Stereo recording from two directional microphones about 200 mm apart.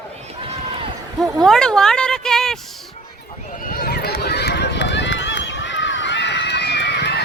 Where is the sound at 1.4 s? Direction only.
Centre (ahead or behind).